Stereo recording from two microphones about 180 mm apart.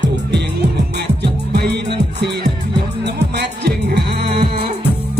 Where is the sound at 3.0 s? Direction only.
70° right (ahead or behind).